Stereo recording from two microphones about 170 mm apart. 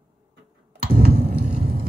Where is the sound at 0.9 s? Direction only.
70° right (ahead or behind).